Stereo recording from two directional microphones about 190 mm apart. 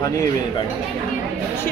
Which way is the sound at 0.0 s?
20° left (ahead or behind).